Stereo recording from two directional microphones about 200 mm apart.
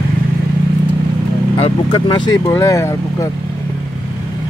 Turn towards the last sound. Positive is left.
turn(degrees=15)  # may be behind; listen again after turning